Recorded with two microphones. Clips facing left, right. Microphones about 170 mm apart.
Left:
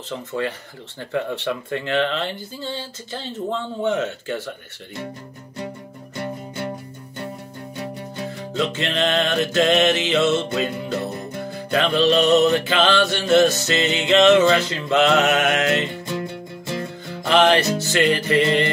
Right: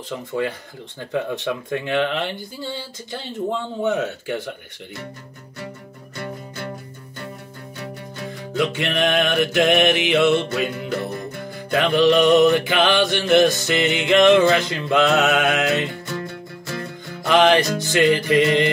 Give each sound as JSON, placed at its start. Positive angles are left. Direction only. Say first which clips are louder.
{"t": 0.4, "sound": "speech", "louder": "right 2 dB", "side_deg": -15}
{"t": 6.1, "sound": "music", "louder": "left 3 dB", "side_deg": 25}
{"t": 8.5, "sound": "speech", "louder": "right 2 dB", "side_deg": -15}
{"t": 10.3, "sound": "music", "louder": "right 1 dB", "side_deg": 20}
{"t": 11.7, "sound": "speech", "louder": "right 2 dB", "side_deg": -15}
{"t": 15.9, "sound": "music", "louder": "left 2 dB", "side_deg": 25}
{"t": 17.3, "sound": "speech", "louder": "right 1 dB", "side_deg": -15}